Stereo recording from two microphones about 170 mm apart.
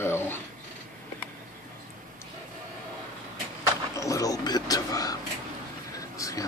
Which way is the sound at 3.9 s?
20° left (ahead or behind).